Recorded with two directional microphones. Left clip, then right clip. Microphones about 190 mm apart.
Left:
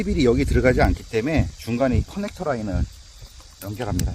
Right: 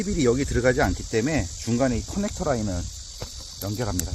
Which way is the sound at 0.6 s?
40° left (ahead or behind).